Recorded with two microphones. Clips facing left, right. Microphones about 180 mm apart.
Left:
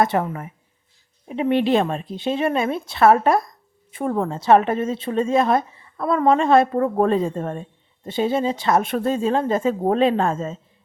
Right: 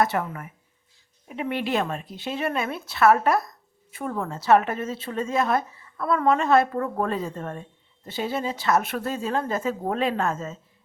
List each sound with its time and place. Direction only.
0.0 s speech: 25° left (ahead or behind)